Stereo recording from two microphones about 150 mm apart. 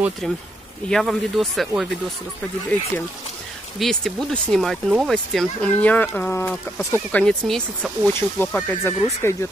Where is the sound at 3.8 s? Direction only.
Centre (ahead or behind).